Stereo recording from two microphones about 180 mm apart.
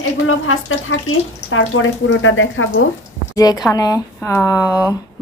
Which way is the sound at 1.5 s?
90° left.